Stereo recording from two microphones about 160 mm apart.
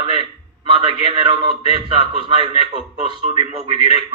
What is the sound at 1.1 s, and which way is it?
Speech, 30° right (ahead or behind).